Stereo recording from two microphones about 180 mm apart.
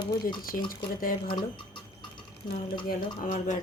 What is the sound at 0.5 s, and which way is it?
Speech, 45° left (ahead or behind).